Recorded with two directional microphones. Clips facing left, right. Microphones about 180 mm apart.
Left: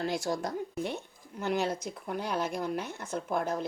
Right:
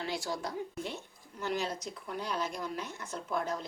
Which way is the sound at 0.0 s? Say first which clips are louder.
Left 5 dB; 45° left (ahead or behind).